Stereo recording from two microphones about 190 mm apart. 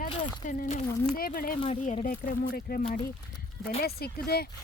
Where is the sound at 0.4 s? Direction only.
40° left (ahead or behind).